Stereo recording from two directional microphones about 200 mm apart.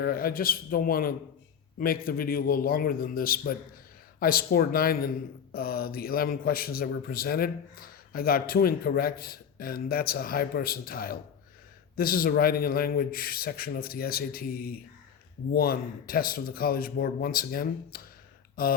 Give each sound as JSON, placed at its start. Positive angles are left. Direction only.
{"t": 0.0, "sound": "speech", "side_deg": 45}